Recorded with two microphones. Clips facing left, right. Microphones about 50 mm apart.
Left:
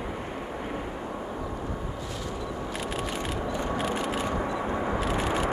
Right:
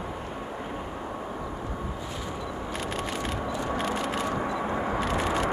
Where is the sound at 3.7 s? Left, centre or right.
Centre.